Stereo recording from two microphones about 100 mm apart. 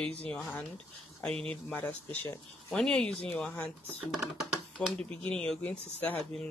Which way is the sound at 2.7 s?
5° left (ahead or behind).